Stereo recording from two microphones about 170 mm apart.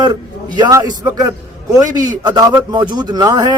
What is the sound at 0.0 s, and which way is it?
A man's voice, 25° right (ahead or behind).